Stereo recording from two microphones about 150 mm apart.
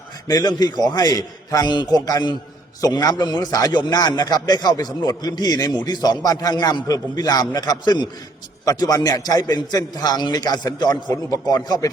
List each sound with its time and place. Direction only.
0.3 s a man's voice: 25° left (ahead or behind)